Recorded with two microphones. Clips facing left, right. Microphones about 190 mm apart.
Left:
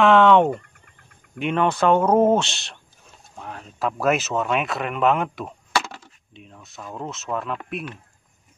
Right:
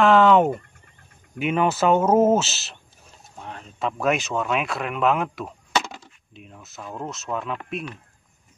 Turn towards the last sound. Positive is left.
turn(degrees=5)  # may be behind; listen again after turning